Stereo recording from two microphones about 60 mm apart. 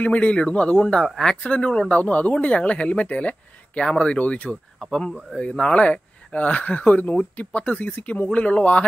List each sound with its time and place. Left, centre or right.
0.0 s speech: left
1.0 s speech: centre
1.9 s speech: left